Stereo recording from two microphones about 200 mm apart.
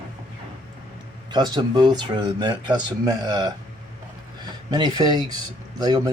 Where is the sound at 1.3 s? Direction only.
20° right (ahead or behind).